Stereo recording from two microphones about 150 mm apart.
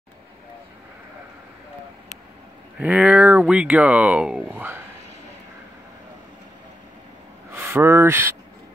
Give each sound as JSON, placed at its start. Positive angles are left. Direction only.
{"t": 2.8, "sound": "speech", "side_deg": -10}
{"t": 7.5, "sound": "speech", "side_deg": -15}